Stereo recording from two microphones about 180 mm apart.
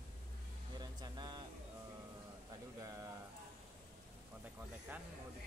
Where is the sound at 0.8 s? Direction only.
25° right (ahead or behind).